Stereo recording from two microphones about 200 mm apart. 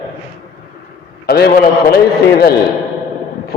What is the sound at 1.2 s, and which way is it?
A man's voice, 55° left (ahead or behind).